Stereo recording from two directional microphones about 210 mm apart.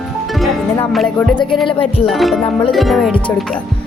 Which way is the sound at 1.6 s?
25° left (ahead or behind).